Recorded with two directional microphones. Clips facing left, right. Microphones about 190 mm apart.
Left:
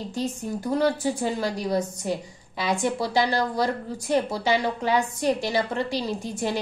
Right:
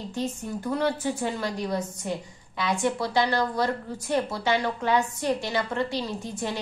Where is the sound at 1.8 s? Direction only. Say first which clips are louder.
Left 4 dB; 10° left (ahead or behind).